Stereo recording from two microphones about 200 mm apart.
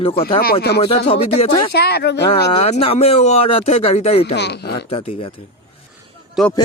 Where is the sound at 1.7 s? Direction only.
55° left (ahead or behind).